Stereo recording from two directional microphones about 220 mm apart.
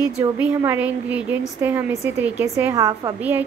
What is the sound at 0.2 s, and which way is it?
A woman's voice, 10° right (ahead or behind).